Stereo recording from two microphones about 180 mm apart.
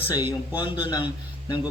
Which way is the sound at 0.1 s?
25° left (ahead or behind).